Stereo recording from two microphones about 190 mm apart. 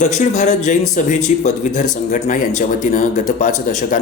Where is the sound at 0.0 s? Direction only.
40° left (ahead or behind).